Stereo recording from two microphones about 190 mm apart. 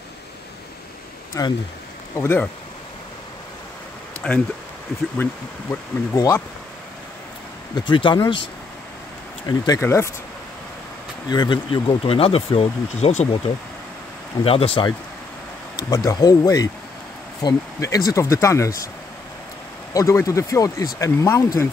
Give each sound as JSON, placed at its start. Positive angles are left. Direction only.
{"t": 1.3, "sound": "speech", "side_deg": 20}
{"t": 4.2, "sound": "speech", "side_deg": 5}
{"t": 7.9, "sound": "speech", "side_deg": 25}
{"t": 9.5, "sound": "speech", "side_deg": 15}
{"t": 11.2, "sound": "speech", "side_deg": 25}
{"t": 14.4, "sound": "speech", "side_deg": 30}
{"t": 19.9, "sound": "speech", "side_deg": 15}